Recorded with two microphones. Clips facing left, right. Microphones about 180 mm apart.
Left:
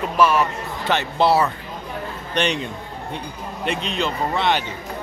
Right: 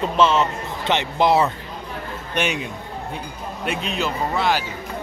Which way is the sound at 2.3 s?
10° right (ahead or behind).